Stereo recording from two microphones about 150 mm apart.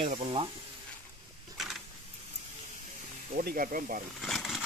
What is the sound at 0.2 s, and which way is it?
Speech, 35° right (ahead or behind).